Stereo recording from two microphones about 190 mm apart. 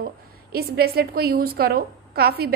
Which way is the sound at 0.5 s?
55° right (ahead or behind).